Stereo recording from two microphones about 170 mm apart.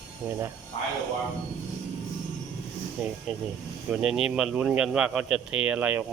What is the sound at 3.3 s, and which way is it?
Speech, 5° right (ahead or behind).